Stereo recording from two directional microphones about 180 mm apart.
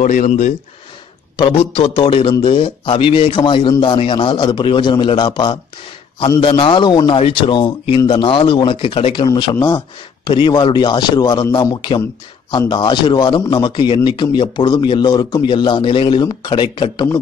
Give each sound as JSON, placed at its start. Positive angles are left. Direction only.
{"t": 0.0, "sound": "speech", "side_deg": 45}
{"t": 1.3, "sound": "a man's voice", "side_deg": 30}